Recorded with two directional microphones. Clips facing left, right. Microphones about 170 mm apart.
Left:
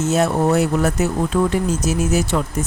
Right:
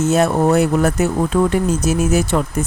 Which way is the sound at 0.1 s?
55° right (ahead or behind).